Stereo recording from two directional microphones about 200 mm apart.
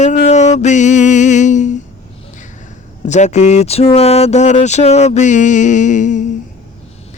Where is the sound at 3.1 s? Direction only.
35° left (ahead or behind).